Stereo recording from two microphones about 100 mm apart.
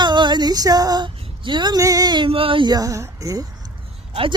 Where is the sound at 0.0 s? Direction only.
50° right (ahead or behind).